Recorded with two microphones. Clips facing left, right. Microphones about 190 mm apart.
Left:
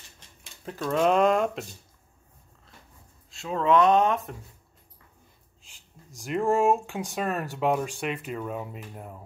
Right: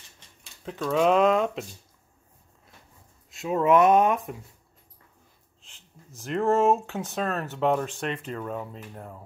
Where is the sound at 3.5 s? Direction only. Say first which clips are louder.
Right 2 dB; 20° right (ahead or behind).